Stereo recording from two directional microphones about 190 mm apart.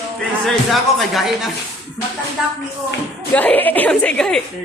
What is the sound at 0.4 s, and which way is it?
Speech, centre (ahead or behind).